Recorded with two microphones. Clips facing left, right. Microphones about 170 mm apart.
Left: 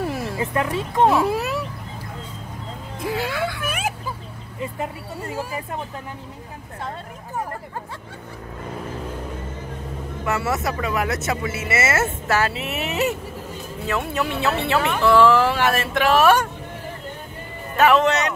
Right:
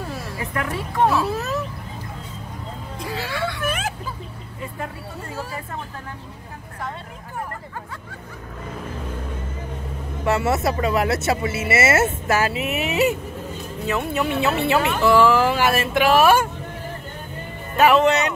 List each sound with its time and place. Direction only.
0.0 s speech: 25° left (ahead or behind)
3.1 s whimper: centre (ahead or behind)
5.3 s speech: 15° left (ahead or behind)
10.2 s speech: 30° right (ahead or behind)
12.4 s speech: 10° right (ahead or behind)
17.7 s speech: 5° right (ahead or behind)